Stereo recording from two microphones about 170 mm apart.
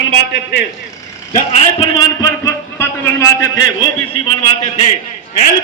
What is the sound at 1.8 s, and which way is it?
Speech, 30° left (ahead or behind).